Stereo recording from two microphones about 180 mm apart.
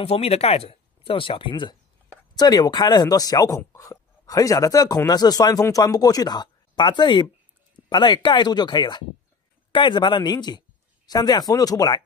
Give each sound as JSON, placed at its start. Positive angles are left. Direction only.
{"t": 0.0, "sound": "speech", "side_deg": 35}